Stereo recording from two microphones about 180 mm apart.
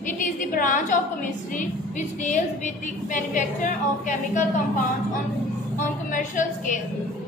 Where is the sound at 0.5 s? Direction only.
45° left (ahead or behind).